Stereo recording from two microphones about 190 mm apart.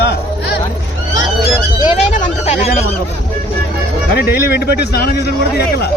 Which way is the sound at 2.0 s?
40° left (ahead or behind).